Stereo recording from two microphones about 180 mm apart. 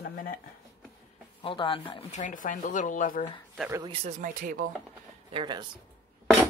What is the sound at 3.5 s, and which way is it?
Speech, 15° right (ahead or behind).